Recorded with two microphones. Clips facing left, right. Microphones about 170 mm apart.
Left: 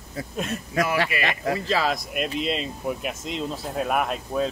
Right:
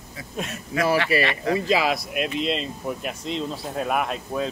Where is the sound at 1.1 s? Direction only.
35° right (ahead or behind).